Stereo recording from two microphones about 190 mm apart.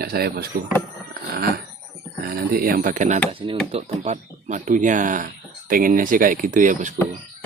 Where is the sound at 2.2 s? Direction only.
50° right (ahead or behind).